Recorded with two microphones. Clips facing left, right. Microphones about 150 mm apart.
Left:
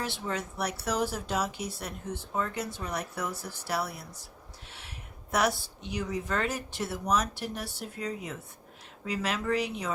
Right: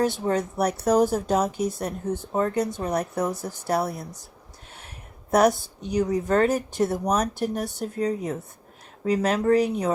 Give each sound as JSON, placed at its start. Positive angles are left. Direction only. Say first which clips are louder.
{"t": 0.0, "sound": "speech", "louder": "right 11 dB", "side_deg": -45}
{"t": 5.3, "sound": "speech", "louder": "right 9 dB", "side_deg": -45}